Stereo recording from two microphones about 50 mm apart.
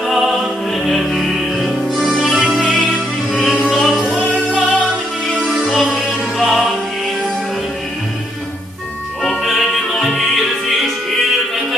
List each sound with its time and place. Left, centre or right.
0.0 s music: centre
4.0 s music: centre
4.3 s music: centre
9.4 s music: centre